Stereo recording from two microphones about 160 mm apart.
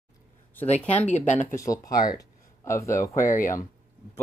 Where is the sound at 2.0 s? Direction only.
20° left (ahead or behind).